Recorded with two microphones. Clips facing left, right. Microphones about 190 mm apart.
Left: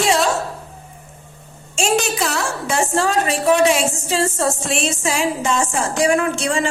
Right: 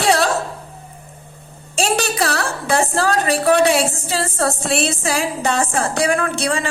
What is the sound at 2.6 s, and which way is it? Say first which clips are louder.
Speech: right 2 dB; 35° right (ahead or behind).